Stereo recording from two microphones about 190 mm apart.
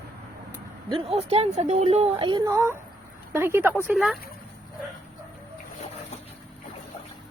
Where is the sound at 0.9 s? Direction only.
30° right (ahead or behind); by 4.2 s centre (ahead or behind).